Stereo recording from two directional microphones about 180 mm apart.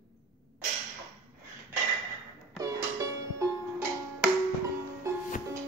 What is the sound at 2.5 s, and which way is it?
Music, 20° right (ahead or behind).